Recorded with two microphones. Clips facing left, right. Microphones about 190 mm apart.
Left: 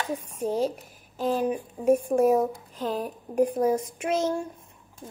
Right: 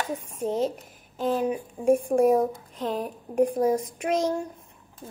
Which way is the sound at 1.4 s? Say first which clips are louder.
Even; 10° right (ahead or behind).